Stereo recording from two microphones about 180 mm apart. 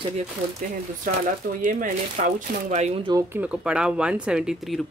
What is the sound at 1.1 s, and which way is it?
Speech, 50° right (ahead or behind).